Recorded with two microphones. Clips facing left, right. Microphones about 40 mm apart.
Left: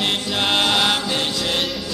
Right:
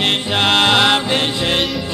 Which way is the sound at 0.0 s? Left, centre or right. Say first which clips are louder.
Right 5 dB; right.